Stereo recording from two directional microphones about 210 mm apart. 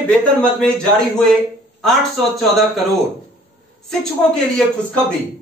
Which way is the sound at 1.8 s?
Centre (ahead or behind).